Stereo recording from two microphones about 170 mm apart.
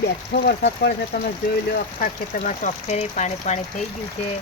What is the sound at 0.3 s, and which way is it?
Speech, 75° left (ahead or behind).